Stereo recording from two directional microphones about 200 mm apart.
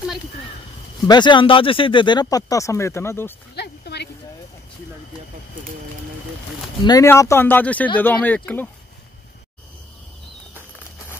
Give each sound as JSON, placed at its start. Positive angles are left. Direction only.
{"t": 1.0, "sound": "speech", "side_deg": 20}
{"t": 3.5, "sound": "a sound", "side_deg": 55}
{"t": 6.8, "sound": "speech", "side_deg": 15}